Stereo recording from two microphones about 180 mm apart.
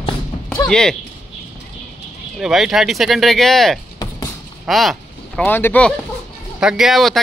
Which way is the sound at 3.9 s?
20° left (ahead or behind).